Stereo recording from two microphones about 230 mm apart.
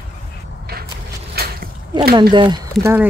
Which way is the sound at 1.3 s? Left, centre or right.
Right.